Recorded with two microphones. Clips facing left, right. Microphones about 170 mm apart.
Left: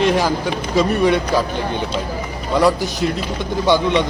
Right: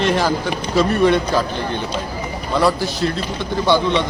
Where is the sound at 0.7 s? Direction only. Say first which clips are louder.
Right 1 dB; centre (ahead or behind).